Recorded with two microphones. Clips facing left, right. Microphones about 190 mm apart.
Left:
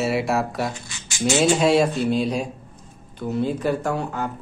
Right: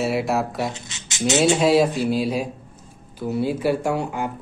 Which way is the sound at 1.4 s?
Centre (ahead or behind).